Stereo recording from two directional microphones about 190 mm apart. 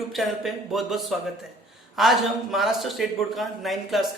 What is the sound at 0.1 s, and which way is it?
A man's voice, centre (ahead or behind).